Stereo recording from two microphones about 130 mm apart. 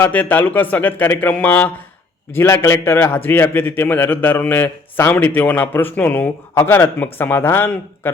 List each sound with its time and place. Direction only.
0.0 s a man's voice: 15° left (ahead or behind)